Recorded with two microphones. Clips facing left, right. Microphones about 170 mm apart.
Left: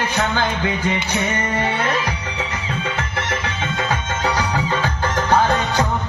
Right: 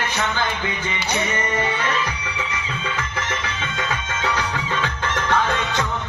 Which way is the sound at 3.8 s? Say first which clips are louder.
Left 4 dB; 40° left (ahead or behind).